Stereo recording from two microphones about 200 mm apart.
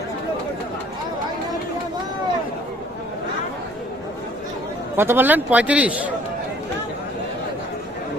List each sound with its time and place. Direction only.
4.9 s a man's voice: 10° right (ahead or behind)